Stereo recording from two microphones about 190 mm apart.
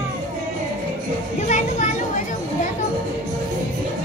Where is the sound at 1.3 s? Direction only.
40° left (ahead or behind).